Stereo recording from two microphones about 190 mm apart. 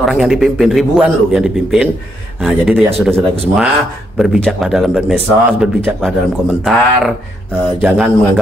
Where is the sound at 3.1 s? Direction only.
30° right (ahead or behind).